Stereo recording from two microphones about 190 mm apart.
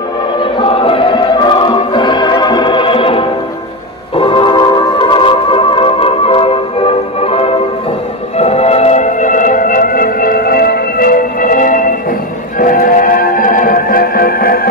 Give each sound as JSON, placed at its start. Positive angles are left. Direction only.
{"t": 0.4, "sound": "choir", "side_deg": 25}
{"t": 4.2, "sound": "music", "side_deg": 25}